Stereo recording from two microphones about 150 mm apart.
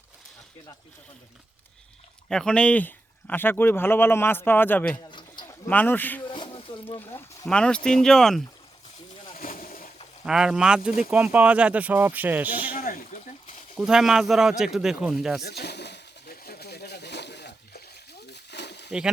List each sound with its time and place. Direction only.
2.3 s a man's voice: 5° left (ahead or behind)
6.2 s a sound: 35° left (ahead or behind)
7.0 s a man's voice: 15° left (ahead or behind)
9.3 s boat: 70° left (ahead or behind)
10.2 s a man's voice: 5° right (ahead or behind)
12.7 s a sound: 70° left (ahead or behind)
13.7 s a man's voice: 5° right (ahead or behind)
15.4 s a sound: 90° left
18.9 s speech: 5° right (ahead or behind)